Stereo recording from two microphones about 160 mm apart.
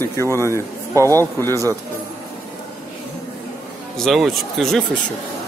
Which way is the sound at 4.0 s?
Centre (ahead or behind).